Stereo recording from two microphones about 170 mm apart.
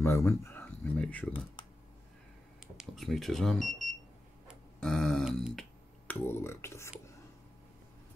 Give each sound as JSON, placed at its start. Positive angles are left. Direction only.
{"t": 0.0, "sound": "speech", "side_deg": 15}
{"t": 2.8, "sound": "speech", "side_deg": 0}
{"t": 4.5, "sound": "a sound", "side_deg": 5}
{"t": 6.2, "sound": "speech", "side_deg": 15}